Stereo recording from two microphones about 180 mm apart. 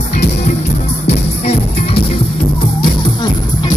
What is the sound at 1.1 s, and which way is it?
Music, 35° left (ahead or behind).